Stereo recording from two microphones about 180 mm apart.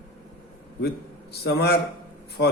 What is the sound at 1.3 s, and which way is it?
Speech, 65° left (ahead or behind).